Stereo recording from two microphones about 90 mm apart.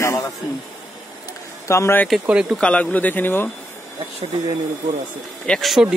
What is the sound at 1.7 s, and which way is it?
Speech, 30° left (ahead or behind).